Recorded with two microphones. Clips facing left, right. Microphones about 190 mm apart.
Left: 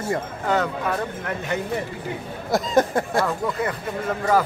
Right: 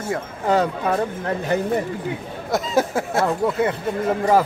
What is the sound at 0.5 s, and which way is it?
Speech, 30° right (ahead or behind).